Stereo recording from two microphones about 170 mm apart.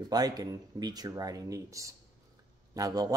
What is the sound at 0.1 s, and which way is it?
Speech, 25° right (ahead or behind).